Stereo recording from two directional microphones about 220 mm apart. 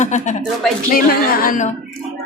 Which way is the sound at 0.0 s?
35° left (ahead or behind).